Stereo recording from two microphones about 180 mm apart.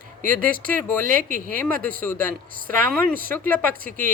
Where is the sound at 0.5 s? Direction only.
50° right (ahead or behind).